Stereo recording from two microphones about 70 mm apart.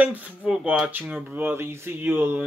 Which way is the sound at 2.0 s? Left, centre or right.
Right.